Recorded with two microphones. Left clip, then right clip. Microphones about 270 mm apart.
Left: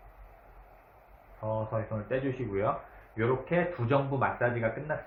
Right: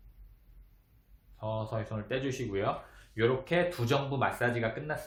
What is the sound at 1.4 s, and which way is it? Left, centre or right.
Speech, right.